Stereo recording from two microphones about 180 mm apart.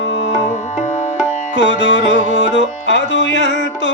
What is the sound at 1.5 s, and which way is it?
Music, 80° left.